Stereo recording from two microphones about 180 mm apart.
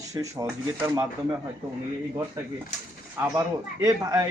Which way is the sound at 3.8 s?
20° right (ahead or behind).